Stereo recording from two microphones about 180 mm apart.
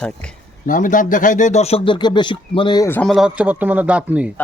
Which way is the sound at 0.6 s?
50° left (ahead or behind).